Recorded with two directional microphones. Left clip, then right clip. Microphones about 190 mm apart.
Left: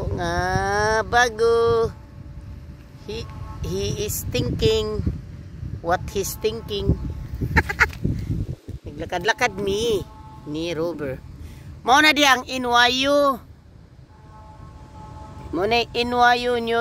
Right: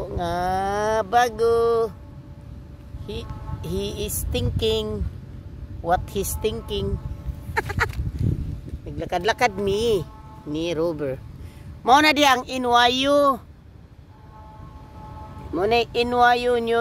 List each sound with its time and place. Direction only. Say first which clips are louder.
0.0 s a sound: left 1 dB; 20° left (ahead or behind)
3.1 s speech: left 1 dB; 10° left (ahead or behind)
7.5 s duck: left 5 dB; 5° left (ahead or behind)
8.8 s speech: even; 5° right (ahead or behind)
15.5 s speech: even; 15° left (ahead or behind)